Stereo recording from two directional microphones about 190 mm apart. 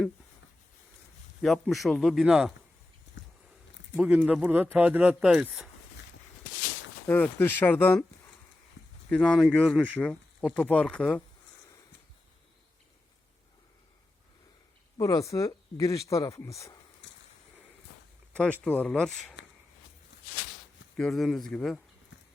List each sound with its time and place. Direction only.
1.4 s speech: centre (ahead or behind)
3.2 s a sound: 70° left (ahead or behind)
3.9 s speech: 5° right (ahead or behind)
7.1 s speech: 10° left (ahead or behind)
9.0 s speech: 5° left (ahead or behind)
14.9 s speech: 20° left (ahead or behind)
18.6 s speech: 5° left (ahead or behind)
20.9 s speech: centre (ahead or behind)